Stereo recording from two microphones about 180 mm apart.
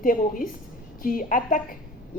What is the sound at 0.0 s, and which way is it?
A woman's voice, 50° left (ahead or behind).